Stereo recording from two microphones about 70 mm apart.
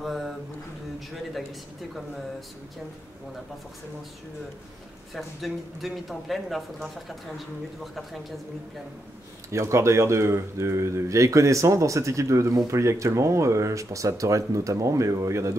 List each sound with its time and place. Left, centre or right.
0.0 s a sound: centre
5.1 s speech: centre
9.5 s speech: right